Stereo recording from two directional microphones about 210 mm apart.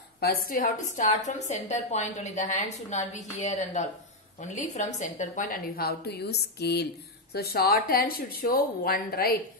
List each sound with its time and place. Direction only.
0.2 s a woman's voice: 45° left (ahead or behind)